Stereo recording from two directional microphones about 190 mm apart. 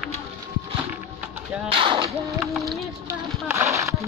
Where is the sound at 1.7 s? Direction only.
25° right (ahead or behind).